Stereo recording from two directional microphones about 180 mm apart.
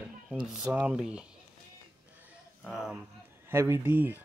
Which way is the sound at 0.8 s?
5° right (ahead or behind).